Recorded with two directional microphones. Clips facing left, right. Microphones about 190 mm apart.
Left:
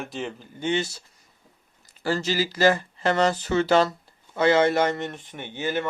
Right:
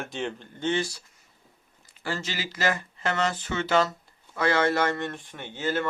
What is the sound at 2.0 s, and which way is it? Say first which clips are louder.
Speech: left 8 dB; 35° left (ahead or behind).